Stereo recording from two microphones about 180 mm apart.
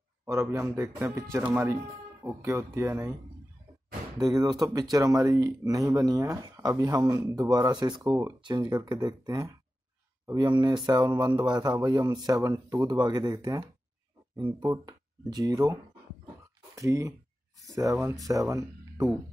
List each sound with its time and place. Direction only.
0.2 s speech: 15° right (ahead or behind)
4.2 s speech: 20° right (ahead or behind)